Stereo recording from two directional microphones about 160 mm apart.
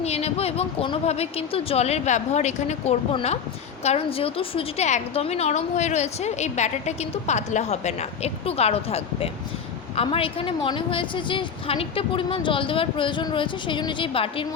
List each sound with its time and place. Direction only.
0.0 s a woman's voice: 40° left (ahead or behind)